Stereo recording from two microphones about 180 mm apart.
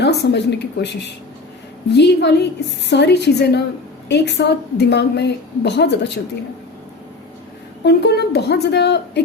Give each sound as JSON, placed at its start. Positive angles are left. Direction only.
{"t": 0.0, "sound": "a woman's voice", "side_deg": 70}
{"t": 7.9, "sound": "a woman's voice", "side_deg": 65}